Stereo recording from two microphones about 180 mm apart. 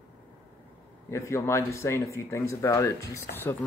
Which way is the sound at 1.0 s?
15° left (ahead or behind).